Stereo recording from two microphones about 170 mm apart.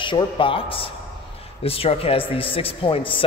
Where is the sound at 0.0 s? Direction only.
30° left (ahead or behind).